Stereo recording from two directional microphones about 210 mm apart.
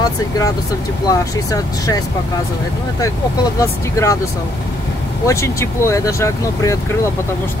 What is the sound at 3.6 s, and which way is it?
Speech, 15° left (ahead or behind).